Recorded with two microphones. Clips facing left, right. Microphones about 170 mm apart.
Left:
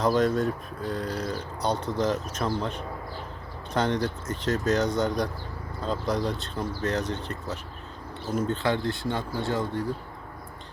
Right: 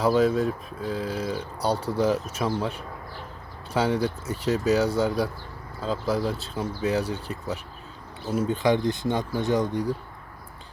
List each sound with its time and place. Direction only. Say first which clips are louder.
0.0 s speech: right 2 dB; 5° right (ahead or behind)